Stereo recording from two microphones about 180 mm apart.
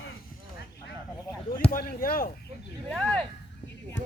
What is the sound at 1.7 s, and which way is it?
Speech, 55° left (ahead or behind).